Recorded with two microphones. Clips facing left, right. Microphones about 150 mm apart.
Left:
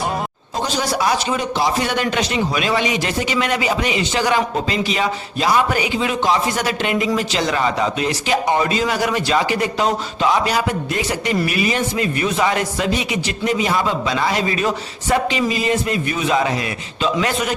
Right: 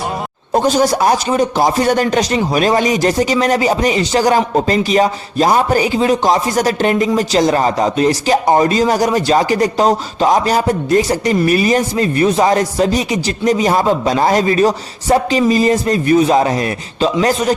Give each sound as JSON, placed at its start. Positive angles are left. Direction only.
{"t": 0.5, "sound": "a man's voice", "side_deg": -45}